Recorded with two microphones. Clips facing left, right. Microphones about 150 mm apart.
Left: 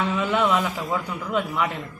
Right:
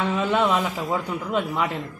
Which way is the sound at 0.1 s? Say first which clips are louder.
Right 2 dB; 25° right (ahead or behind).